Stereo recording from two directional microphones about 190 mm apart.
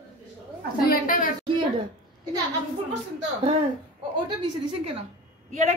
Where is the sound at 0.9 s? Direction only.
45° left (ahead or behind).